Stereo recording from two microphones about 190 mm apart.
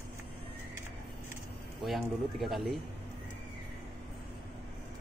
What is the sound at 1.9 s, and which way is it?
Speech, centre (ahead or behind).